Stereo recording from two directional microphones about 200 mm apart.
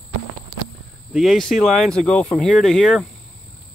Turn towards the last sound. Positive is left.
turn(degrees=0)  # may be behind; listen again after turning